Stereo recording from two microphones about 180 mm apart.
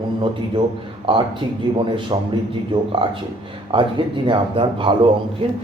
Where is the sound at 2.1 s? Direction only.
25° right (ahead or behind).